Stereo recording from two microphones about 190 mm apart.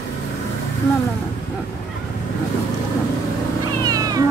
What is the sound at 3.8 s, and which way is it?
Cat, 20° right (ahead or behind).